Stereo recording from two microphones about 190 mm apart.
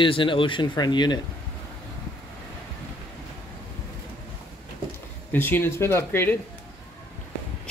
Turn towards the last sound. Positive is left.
turn(degrees=10)  # may be behind; listen again after turning